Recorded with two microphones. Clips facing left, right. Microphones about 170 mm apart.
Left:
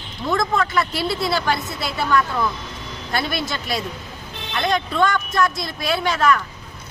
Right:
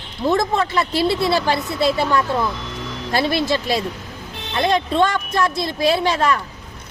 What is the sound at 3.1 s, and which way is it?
Speech, 30° right (ahead or behind).